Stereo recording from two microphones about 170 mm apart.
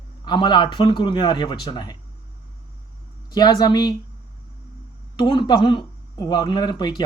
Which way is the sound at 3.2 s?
25° left (ahead or behind).